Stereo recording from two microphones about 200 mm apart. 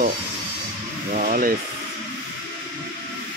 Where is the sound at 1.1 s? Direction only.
40° right (ahead or behind).